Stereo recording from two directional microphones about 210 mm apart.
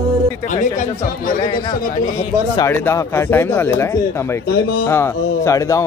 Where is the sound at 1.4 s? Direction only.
25° left (ahead or behind).